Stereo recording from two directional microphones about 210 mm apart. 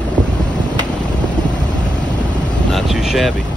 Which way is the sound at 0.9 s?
20° left (ahead or behind).